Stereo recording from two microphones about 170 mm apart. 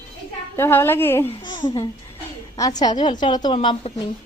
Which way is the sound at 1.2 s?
25° left (ahead or behind).